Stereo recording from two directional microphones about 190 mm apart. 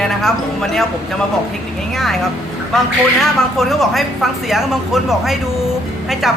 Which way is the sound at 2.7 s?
Centre (ahead or behind).